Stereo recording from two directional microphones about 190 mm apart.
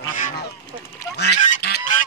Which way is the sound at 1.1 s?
60° left (ahead or behind).